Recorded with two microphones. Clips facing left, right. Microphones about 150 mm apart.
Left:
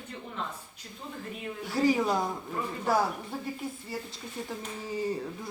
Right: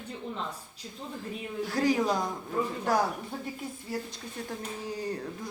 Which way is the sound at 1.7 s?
5° left (ahead or behind).